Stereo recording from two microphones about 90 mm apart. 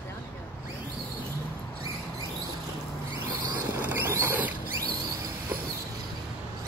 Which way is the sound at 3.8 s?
25° right (ahead or behind).